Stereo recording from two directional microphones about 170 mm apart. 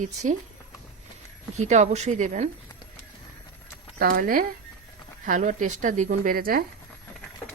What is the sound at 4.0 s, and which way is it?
Speech, 55° right (ahead or behind).